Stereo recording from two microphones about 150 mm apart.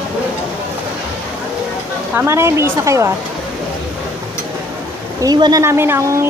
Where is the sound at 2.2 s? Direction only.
20° right (ahead or behind).